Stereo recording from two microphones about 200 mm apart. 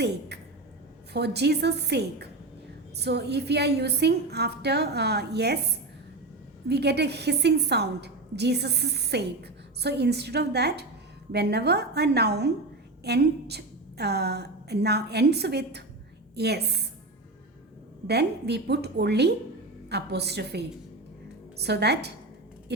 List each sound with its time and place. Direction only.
1.1 s a woman's voice: 55° right (ahead or behind)
6.7 s a woman's voice: 55° right (ahead or behind)
18.1 s a woman's voice: 55° right (ahead or behind)